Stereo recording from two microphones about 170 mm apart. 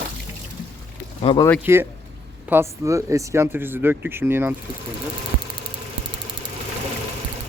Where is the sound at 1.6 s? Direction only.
15° right (ahead or behind).